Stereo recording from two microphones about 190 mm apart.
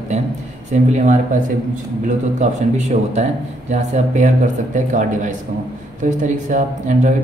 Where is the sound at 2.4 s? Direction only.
40° right (ahead or behind).